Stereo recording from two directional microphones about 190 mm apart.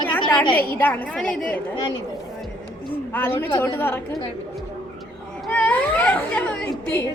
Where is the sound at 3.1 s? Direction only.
10° left (ahead or behind).